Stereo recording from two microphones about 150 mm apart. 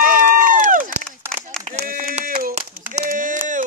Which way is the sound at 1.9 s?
70° right (ahead or behind).